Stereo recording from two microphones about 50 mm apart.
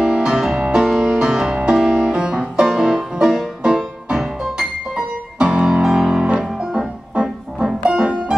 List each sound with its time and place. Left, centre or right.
0.0 s music: centre